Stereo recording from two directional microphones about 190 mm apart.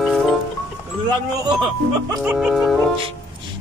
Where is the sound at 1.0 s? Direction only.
20° right (ahead or behind).